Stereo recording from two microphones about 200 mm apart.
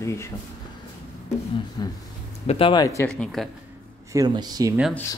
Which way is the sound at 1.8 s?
20° left (ahead or behind).